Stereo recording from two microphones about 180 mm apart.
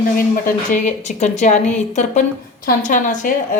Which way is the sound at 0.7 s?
40° left (ahead or behind).